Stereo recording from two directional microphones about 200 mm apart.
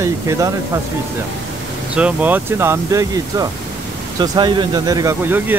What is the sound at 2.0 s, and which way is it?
Speech, 5° right (ahead or behind).